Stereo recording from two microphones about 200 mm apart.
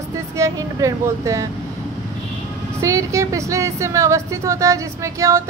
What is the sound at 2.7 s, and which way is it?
A woman's voice, 15° right (ahead or behind).